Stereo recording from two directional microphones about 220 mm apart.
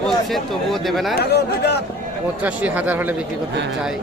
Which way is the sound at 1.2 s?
45° left (ahead or behind).